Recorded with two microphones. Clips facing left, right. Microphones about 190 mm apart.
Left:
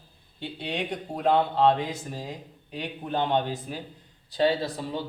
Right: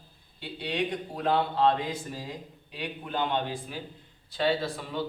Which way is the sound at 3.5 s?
40° left (ahead or behind).